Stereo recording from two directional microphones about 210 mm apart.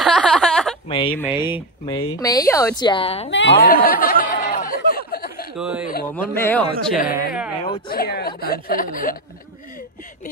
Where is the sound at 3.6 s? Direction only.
45° left (ahead or behind).